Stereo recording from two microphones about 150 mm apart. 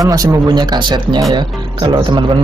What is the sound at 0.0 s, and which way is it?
Speech, 25° right (ahead or behind).